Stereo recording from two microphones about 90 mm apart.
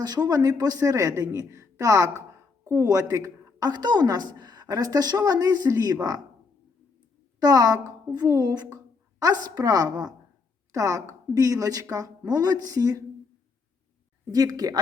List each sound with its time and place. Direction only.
0.0 s a woman's voice: 45° right (ahead or behind)
7.4 s a woman's voice: 45° right (ahead or behind)
14.3 s a woman's voice: 45° right (ahead or behind)